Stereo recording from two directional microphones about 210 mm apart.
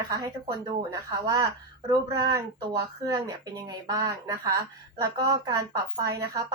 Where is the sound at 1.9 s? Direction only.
20° right (ahead or behind).